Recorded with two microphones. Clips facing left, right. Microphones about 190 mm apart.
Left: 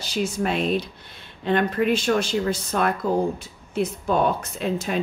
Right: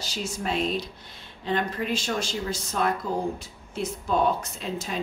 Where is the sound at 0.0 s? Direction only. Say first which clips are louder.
Left 7 dB; 60° left (ahead or behind).